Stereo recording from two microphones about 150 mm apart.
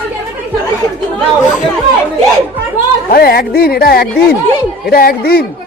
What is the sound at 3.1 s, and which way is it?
Speech, 90° left.